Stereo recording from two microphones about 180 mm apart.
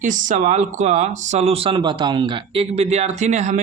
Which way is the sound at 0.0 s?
45° right (ahead or behind).